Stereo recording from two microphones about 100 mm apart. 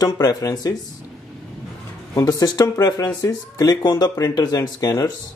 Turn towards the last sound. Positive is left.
turn(degrees=35)  # may be behind; listen again after turning